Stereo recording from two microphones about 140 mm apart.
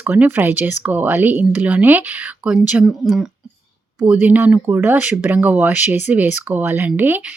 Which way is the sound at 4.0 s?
15° right (ahead or behind).